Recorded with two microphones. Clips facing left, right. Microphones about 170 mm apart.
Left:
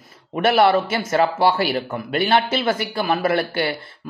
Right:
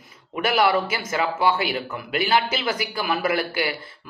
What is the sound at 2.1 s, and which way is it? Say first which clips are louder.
Speech: left 3 dB; 30° left (ahead or behind).